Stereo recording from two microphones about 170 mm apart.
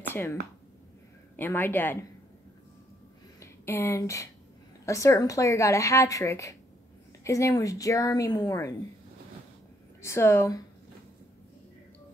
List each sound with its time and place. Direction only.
0.1 s a woman's voice: 15° left (ahead or behind)
3.3 s a woman's voice: 15° left (ahead or behind)
10.0 s a woman's voice: 15° left (ahead or behind)